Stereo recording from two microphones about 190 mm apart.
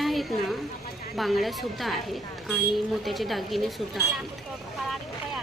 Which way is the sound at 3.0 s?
Centre (ahead or behind).